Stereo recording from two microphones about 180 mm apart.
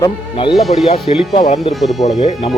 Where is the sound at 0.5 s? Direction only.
Centre (ahead or behind).